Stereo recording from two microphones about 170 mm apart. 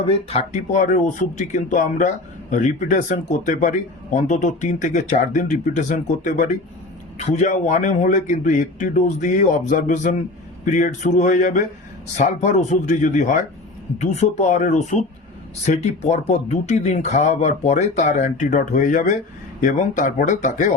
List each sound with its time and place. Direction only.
0.0 s speech: 35° left (ahead or behind)